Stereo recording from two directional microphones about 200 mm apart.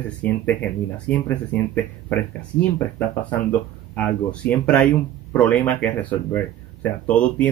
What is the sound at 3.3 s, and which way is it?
Speech, 10° left (ahead or behind).